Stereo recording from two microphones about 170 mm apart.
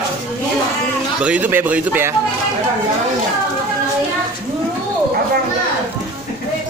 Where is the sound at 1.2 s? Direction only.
10° right (ahead or behind).